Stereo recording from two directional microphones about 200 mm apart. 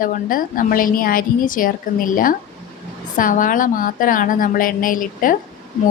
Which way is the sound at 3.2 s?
40° left (ahead or behind).